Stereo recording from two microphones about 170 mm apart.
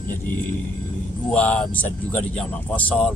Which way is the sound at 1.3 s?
10° left (ahead or behind).